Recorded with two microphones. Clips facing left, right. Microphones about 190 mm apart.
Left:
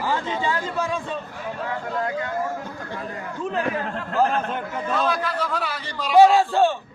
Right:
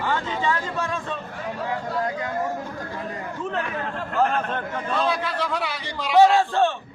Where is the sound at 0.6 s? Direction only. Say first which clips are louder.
Left 2 dB; 5° left (ahead or behind).